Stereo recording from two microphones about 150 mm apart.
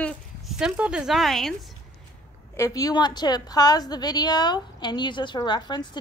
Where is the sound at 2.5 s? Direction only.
20° left (ahead or behind).